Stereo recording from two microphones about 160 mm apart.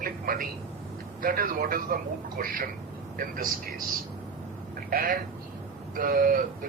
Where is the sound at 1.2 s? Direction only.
65° right (ahead or behind).